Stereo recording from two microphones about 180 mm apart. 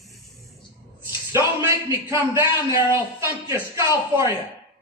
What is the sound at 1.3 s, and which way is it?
A man's voice, 15° right (ahead or behind).